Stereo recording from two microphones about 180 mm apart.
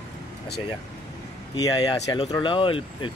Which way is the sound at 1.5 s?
20° left (ahead or behind).